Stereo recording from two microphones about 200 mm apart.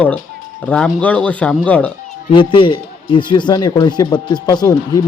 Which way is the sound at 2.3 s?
25° left (ahead or behind).